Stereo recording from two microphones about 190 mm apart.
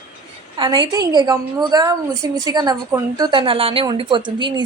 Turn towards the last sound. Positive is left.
turn(degrees=-25)  # may be behind; listen again after turning